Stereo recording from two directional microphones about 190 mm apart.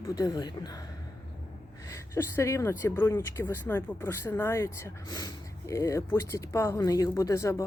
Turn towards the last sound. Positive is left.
turn(degrees=15)  # may be behind; listen again after turning